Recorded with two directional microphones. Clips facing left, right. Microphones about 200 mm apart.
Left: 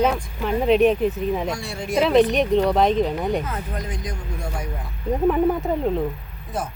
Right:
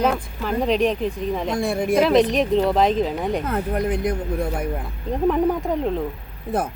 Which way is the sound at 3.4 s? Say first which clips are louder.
Right 7 dB; 60° right (ahead or behind).